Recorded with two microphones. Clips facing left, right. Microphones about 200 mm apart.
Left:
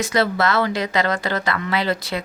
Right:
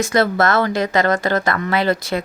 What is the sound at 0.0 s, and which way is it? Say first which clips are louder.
Speech: right 3 dB; 50° right (ahead or behind).